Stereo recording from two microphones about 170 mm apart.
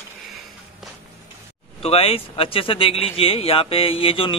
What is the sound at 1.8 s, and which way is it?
Speech, 35° left (ahead or behind).